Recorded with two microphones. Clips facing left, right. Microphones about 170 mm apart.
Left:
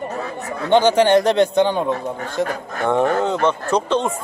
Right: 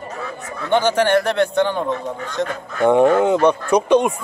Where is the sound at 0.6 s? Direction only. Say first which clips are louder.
Left 3 dB; 15° left (ahead or behind).